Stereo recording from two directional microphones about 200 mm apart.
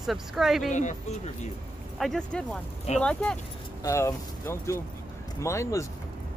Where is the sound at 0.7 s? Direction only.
35° left (ahead or behind).